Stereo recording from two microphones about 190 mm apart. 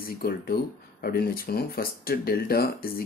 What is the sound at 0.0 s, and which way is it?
Speech, 50° left (ahead or behind).